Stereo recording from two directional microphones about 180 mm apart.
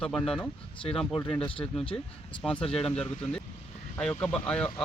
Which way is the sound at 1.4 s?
30° left (ahead or behind).